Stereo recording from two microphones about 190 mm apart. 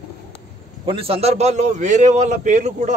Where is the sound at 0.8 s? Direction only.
30° right (ahead or behind).